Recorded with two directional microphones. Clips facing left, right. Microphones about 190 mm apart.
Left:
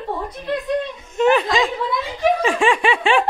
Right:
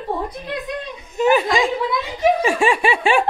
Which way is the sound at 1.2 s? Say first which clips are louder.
Even; 10° right (ahead or behind).